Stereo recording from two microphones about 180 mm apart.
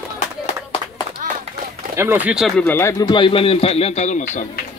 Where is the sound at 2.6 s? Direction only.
10° left (ahead or behind); by 4.4 s 40° left (ahead or behind).